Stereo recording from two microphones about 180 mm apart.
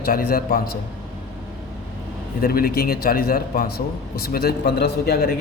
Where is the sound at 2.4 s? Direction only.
55° left (ahead or behind).